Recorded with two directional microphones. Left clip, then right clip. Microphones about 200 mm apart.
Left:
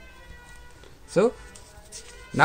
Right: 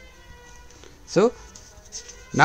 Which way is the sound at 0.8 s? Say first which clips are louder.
Right 2 dB; 25° right (ahead or behind).